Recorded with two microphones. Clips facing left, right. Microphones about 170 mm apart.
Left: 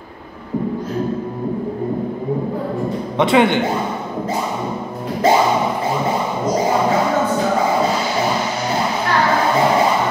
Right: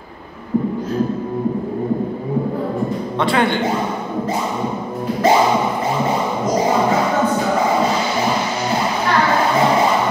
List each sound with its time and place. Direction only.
3.2 s a man's voice: 20° left (ahead or behind)